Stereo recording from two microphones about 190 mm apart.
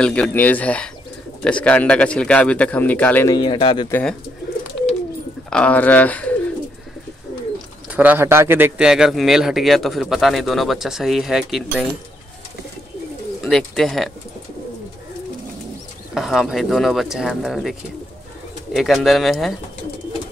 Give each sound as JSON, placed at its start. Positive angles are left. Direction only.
{"t": 0.0, "sound": "a man's voice", "side_deg": 5}
{"t": 3.3, "sound": "speech", "side_deg": 20}
{"t": 5.5, "sound": "speech", "side_deg": 5}
{"t": 7.9, "sound": "a man's voice", "side_deg": -10}
{"t": 13.4, "sound": "speech", "side_deg": 0}
{"t": 16.2, "sound": "a man's voice", "side_deg": 0}